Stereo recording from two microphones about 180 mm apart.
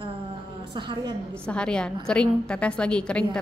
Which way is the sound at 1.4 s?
5° left (ahead or behind).